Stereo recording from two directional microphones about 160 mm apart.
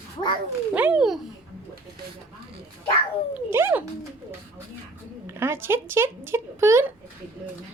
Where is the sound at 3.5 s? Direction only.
15° right (ahead or behind).